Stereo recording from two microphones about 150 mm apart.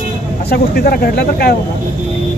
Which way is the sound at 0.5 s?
90° left.